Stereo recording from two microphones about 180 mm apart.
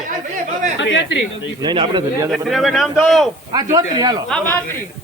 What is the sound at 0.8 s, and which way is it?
Speech, 90° left.